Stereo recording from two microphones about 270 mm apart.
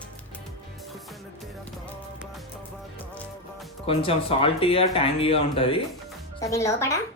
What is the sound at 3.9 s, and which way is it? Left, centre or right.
A child's voice, left.